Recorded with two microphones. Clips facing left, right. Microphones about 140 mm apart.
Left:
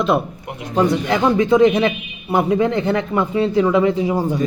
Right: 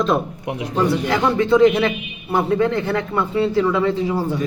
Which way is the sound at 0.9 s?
15° left (ahead or behind).